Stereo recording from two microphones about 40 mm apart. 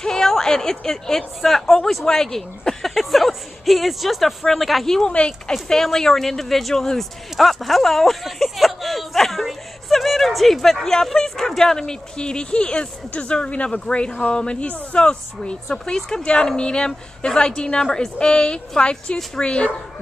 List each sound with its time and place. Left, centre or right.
0.0 s speech: centre
4.8 s speech: centre
13.1 s speech: left
13.7 s speech: left